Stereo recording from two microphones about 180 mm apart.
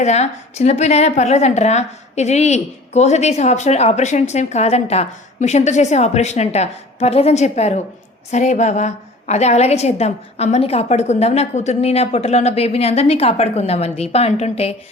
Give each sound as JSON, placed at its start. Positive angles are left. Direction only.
{"t": 0.0, "sound": "a woman's voice", "side_deg": 40}